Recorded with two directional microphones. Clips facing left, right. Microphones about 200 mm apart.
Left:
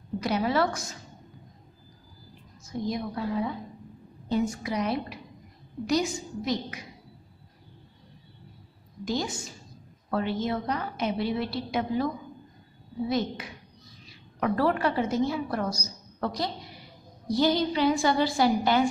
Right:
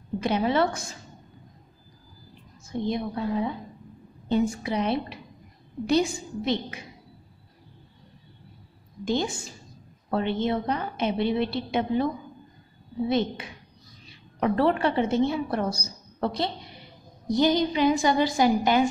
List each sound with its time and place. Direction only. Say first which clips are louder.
0.2 s a woman's voice: right 2 dB; 25° right (ahead or behind)
2.7 s a woman's voice: right 3 dB; 25° right (ahead or behind)
9.0 s a woman's voice: right 3 dB; 25° right (ahead or behind)
13.1 s a woman's voice: right 3 dB; 25° right (ahead or behind)